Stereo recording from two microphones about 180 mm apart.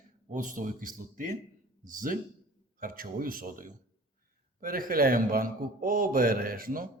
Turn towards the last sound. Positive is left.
turn(degrees=-50)  # may be behind; listen again after turning